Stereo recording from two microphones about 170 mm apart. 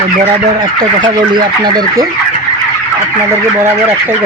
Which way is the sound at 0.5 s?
25° right (ahead or behind).